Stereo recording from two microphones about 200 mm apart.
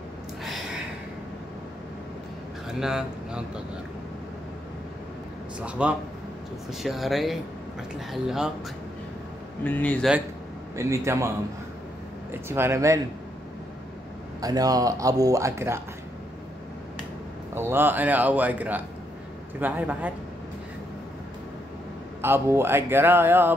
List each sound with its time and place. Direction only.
2.8 s a man's voice: 5° right (ahead or behind)
5.8 s a man's voice: 5° right (ahead or behind)
9.6 s speech: 10° left (ahead or behind)
10.8 s speech: 15° right (ahead or behind)
14.4 s speech: 20° right (ahead or behind)
17.6 s speech: 10° right (ahead or behind)
22.2 s speech: 10° right (ahead or behind)